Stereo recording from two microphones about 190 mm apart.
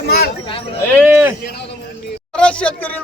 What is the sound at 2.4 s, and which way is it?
Speech, 5° left (ahead or behind).